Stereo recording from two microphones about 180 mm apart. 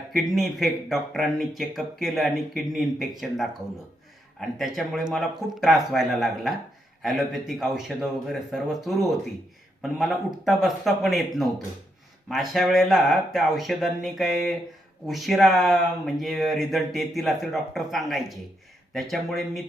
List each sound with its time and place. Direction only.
0.1 s speech: centre (ahead or behind)